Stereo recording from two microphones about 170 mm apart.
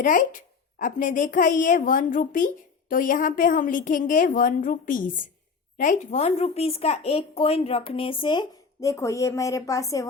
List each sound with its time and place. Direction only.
0.0 s a woman's voice: 50° left (ahead or behind); by 10.1 s 20° left (ahead or behind)